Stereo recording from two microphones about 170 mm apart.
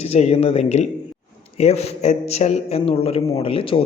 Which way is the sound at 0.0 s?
40° left (ahead or behind).